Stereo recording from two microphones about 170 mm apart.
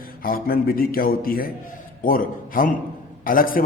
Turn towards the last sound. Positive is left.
turn(degrees=55)  # may be behind; listen again after turning